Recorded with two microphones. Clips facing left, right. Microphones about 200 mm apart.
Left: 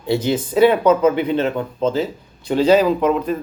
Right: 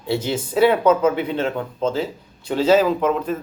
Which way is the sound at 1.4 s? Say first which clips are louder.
Left 3 dB; 10° left (ahead or behind).